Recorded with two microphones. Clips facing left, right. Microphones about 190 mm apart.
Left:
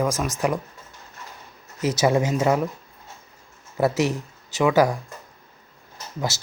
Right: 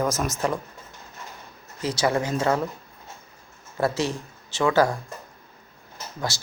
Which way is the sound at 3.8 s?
20° left (ahead or behind).